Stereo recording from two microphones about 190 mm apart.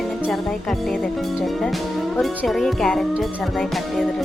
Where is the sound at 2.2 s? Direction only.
Centre (ahead or behind).